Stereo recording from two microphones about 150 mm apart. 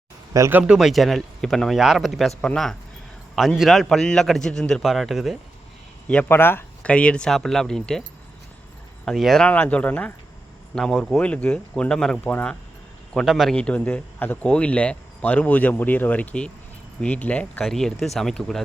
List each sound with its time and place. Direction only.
0.3 s speech: 20° right (ahead or behind)
0.7 s a man's voice: 5° right (ahead or behind)
6.1 s a man's voice: 10° left (ahead or behind)
9.0 s a man's voice: centre (ahead or behind)
13.1 s a man's voice: centre (ahead or behind)